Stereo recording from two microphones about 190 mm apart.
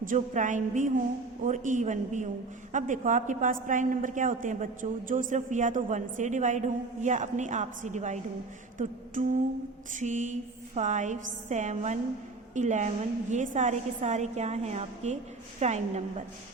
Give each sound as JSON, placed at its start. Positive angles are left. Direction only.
{"t": 0.0, "sound": "a woman's voice", "side_deg": -45}
{"t": 8.8, "sound": "a sound", "side_deg": -40}
{"t": 9.9, "sound": "a woman's voice", "side_deg": -40}